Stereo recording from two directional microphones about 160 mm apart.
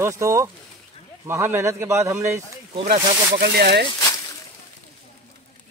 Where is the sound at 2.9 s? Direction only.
80° right.